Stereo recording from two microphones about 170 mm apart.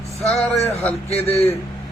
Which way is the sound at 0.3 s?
40° left (ahead or behind).